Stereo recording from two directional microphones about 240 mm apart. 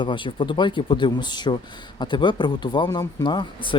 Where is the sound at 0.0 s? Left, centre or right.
Centre.